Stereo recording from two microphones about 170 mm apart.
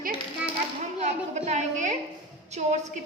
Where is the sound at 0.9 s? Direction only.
40° right (ahead or behind).